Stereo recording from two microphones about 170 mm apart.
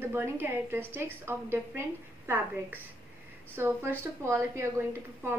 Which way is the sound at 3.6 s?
15° right (ahead or behind).